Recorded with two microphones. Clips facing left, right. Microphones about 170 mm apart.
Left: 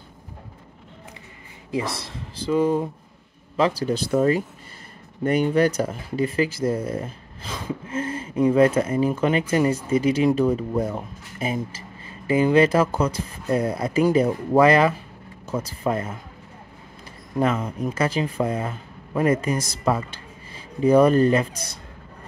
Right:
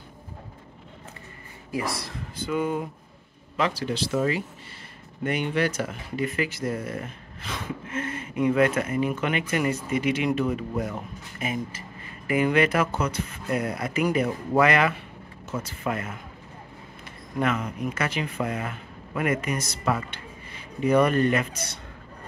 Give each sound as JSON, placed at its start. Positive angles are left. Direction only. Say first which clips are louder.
{"t": 1.7, "sound": "speech", "louder": "left 3 dB", "side_deg": 25}
{"t": 17.4, "sound": "speech", "louder": "left 4 dB", "side_deg": 30}